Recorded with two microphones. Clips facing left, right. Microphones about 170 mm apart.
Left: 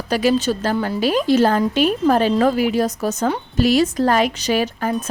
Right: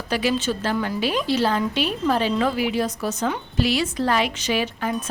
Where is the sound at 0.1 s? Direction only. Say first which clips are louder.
Left 5 dB; 40° left (ahead or behind).